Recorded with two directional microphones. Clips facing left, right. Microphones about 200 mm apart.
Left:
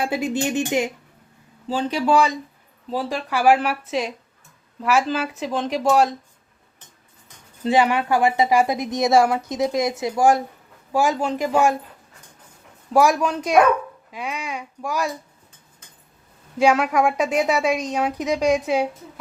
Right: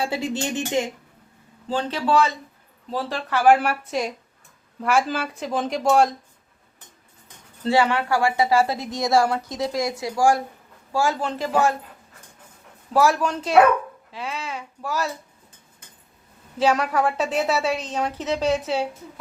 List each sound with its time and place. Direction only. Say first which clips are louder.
0.0 s a woman's voice: left 3 dB; 15° left (ahead or behind)
7.6 s a woman's voice: left 2 dB; 15° left (ahead or behind)
12.9 s a woman's voice: left 2 dB; 15° left (ahead or behind)
16.6 s a woman's voice: left 3 dB; 10° left (ahead or behind)